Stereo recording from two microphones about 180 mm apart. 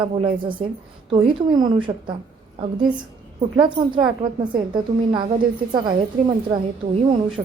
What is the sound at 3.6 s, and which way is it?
A woman's voice, 25° right (ahead or behind).